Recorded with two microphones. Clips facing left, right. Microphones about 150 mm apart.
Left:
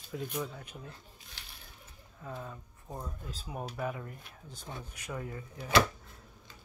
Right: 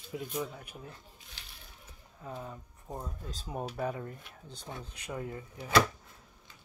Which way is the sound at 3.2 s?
30° right (ahead or behind).